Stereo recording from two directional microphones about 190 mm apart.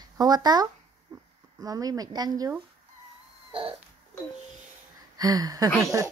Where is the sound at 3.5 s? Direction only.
30° right (ahead or behind).